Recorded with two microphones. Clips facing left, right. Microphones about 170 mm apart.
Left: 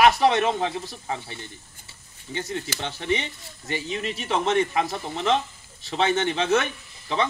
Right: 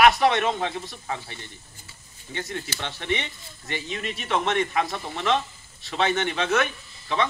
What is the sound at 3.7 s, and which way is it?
Speech, 30° left (ahead or behind).